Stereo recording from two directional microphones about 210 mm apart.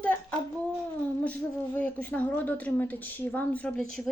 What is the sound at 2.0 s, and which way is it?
A woman's voice, 5° left (ahead or behind).